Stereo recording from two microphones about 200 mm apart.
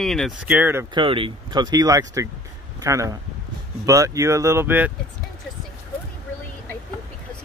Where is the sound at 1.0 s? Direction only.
25° right (ahead or behind); by 4.9 s 10° right (ahead or behind).